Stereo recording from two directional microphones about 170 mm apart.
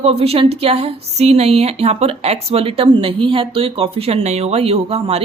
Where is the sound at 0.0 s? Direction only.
35° right (ahead or behind).